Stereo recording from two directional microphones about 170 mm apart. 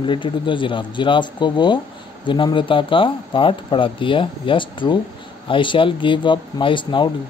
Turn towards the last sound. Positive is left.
turn(degrees=30)  # may be behind; listen again after turning